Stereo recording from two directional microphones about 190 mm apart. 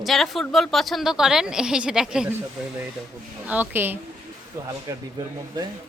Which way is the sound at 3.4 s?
10° right (ahead or behind).